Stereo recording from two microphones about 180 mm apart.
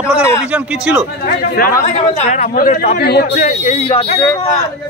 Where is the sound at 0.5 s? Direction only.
5° right (ahead or behind).